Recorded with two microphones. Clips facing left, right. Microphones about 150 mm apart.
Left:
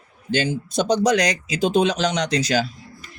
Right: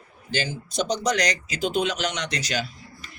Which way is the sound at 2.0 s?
35° left (ahead or behind).